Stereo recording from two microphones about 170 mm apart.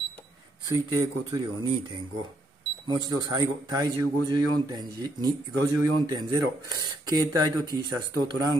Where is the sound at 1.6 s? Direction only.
30° right (ahead or behind).